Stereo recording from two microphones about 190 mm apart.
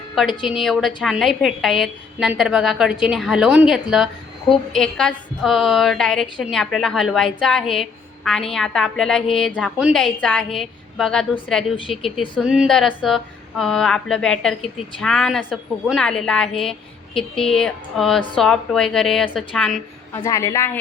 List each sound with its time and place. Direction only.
0.4 s a woman's voice: centre (ahead or behind)
20.1 s a man's voice: 15° left (ahead or behind)